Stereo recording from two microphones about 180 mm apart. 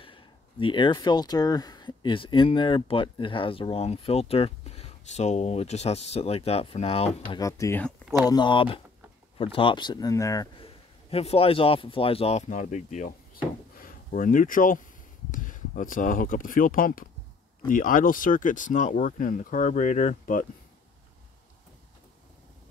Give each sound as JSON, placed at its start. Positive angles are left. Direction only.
{"t": 0.0, "sound": "speech", "side_deg": 30}
{"t": 7.3, "sound": "speech", "side_deg": 20}
{"t": 10.6, "sound": "a man's voice", "side_deg": 35}